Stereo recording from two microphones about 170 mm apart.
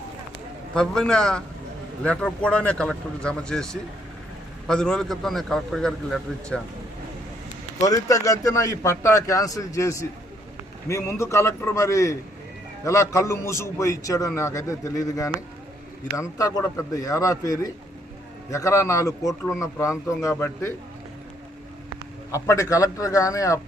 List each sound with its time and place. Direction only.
0.7 s a man's voice: 5° left (ahead or behind)
7.8 s a man's voice: 20° left (ahead or behind)
22.3 s speech: 20° left (ahead or behind)